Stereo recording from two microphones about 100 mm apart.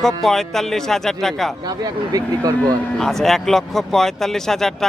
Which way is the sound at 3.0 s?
Centre (ahead or behind).